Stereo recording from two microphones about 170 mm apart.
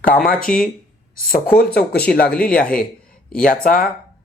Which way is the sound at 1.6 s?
65° left (ahead or behind).